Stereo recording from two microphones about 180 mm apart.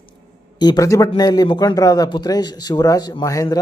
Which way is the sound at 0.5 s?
25° left (ahead or behind).